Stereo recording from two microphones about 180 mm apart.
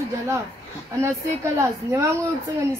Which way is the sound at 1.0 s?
15° right (ahead or behind).